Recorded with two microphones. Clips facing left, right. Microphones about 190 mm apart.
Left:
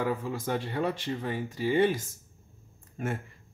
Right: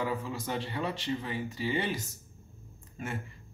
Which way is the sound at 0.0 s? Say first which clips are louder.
Left 3 dB; 50° left (ahead or behind).